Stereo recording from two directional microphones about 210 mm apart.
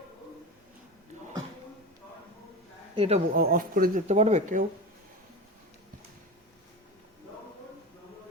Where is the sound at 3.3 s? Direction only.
45° right (ahead or behind).